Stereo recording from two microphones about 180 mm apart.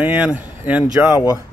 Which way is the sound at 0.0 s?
10° right (ahead or behind).